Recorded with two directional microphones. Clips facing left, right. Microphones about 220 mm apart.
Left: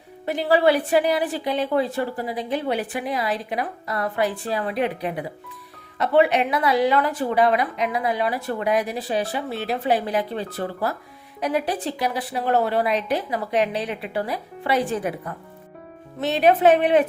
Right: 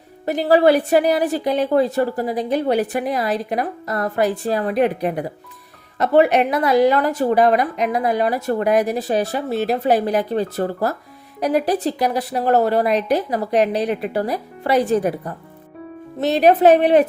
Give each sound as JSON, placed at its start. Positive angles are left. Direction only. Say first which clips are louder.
{"t": 0.3, "sound": "a woman's voice", "louder": "right 4 dB", "side_deg": -40}